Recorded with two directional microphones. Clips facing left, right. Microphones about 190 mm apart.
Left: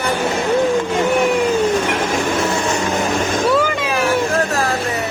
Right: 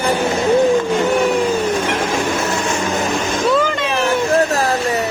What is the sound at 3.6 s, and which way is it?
Vehicle, 5° left (ahead or behind).